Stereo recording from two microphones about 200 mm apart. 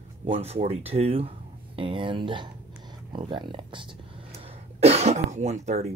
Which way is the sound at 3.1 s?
25° right (ahead or behind).